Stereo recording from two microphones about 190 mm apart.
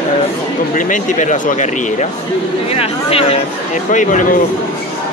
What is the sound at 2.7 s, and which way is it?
Speech, 30° left (ahead or behind).